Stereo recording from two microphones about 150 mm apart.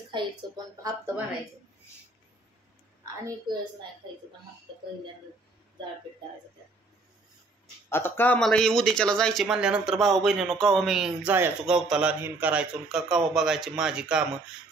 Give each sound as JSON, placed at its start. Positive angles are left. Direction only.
{"t": 0.1, "sound": "a woman's voice", "side_deg": -30}
{"t": 0.8, "sound": "speech", "side_deg": -15}
{"t": 7.9, "sound": "speech", "side_deg": 15}
{"t": 8.4, "sound": "speech", "side_deg": 5}